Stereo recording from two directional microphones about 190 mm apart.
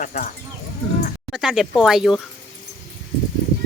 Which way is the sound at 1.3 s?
5° right (ahead or behind).